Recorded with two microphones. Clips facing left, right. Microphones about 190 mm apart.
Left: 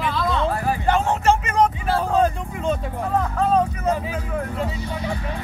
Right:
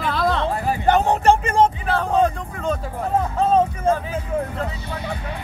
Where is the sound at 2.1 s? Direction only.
Centre (ahead or behind).